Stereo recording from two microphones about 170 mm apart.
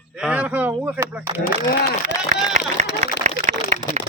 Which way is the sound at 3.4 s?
60° left (ahead or behind).